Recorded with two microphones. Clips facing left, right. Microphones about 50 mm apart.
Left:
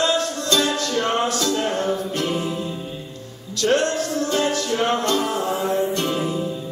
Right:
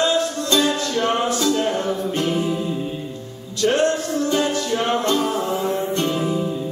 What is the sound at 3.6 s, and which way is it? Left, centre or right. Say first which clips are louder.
Music: right 1 dB; right.